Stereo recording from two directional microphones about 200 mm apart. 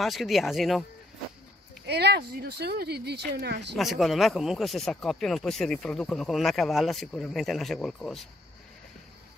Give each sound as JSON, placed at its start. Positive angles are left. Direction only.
{"t": 0.0, "sound": "speech", "side_deg": 0}
{"t": 1.9, "sound": "speech", "side_deg": -55}
{"t": 3.7, "sound": "speech", "side_deg": 0}